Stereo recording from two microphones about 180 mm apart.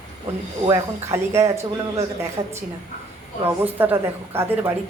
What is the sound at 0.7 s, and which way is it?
A woman's voice, 15° right (ahead or behind).